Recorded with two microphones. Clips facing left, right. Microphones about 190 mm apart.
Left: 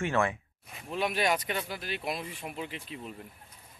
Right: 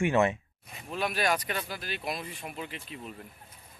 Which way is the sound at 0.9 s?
20° left (ahead or behind).